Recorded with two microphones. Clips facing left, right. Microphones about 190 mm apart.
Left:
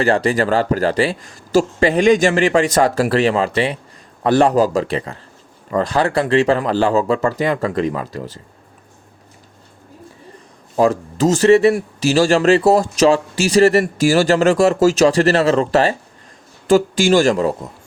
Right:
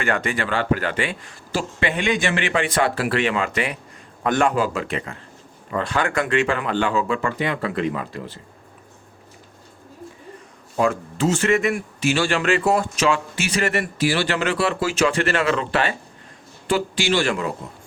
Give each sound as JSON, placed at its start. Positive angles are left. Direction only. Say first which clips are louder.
{"t": 0.0, "sound": "speech", "louder": "left 8 dB", "side_deg": 35}
{"t": 10.8, "sound": "speech", "louder": "left 5 dB", "side_deg": 40}